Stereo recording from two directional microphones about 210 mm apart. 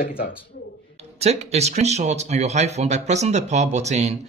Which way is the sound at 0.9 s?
30° right (ahead or behind).